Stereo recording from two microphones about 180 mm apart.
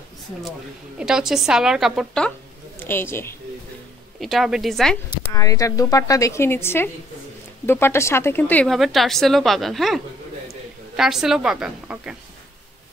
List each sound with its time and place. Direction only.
0.4 s speech: centre (ahead or behind)
2.8 s a woman's voice: 10° left (ahead or behind)
4.2 s speech: centre (ahead or behind)
5.3 s a woman's voice: 20° left (ahead or behind); by 12.2 s 5° right (ahead or behind)